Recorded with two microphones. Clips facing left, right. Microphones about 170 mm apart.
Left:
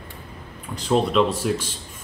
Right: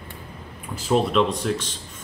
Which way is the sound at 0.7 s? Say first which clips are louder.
Even; 5° right (ahead or behind).